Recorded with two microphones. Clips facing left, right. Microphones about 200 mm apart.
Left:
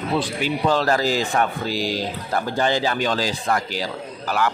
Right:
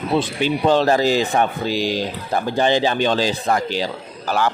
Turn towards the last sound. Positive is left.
turn(degrees=-30)  # may be behind; listen again after turning